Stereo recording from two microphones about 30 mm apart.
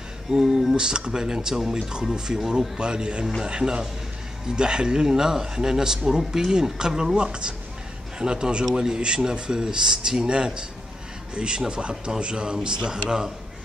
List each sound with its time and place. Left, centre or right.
0.3 s a man's voice: centre
1.5 s a man's voice: centre
7.2 s a man's voice: right
10.2 s a man's voice: right